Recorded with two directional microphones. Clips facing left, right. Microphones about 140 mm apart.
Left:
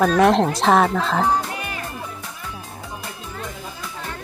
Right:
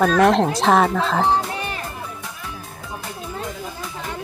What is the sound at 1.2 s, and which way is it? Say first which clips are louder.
Music: right 1 dB; 30° right (ahead or behind).